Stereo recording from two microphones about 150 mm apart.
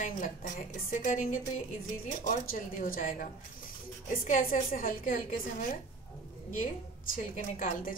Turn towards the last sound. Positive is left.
turn(degrees=65)  # may be behind; listen again after turning